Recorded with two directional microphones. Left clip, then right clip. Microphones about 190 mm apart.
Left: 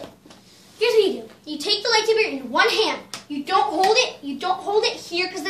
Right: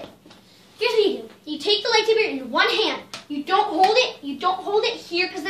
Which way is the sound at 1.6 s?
Centre (ahead or behind).